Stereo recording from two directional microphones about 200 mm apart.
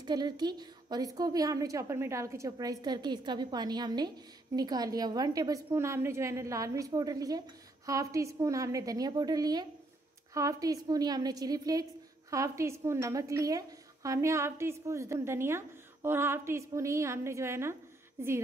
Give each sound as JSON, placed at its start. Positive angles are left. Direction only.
{"t": 0.0, "sound": "a woman's voice", "side_deg": -20}